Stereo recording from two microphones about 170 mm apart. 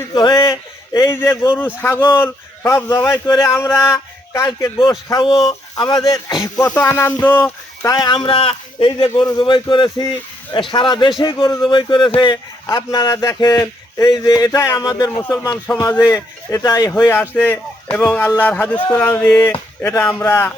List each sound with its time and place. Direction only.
0.1 s a sound: 25° left (ahead or behind)
1.1 s speech: 15° left (ahead or behind)
4.4 s speech: 25° left (ahead or behind); by 7.9 s 10° left (ahead or behind)
7.9 s speech: 25° left (ahead or behind)